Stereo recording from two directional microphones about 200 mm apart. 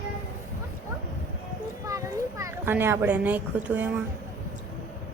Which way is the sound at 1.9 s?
15° right (ahead or behind).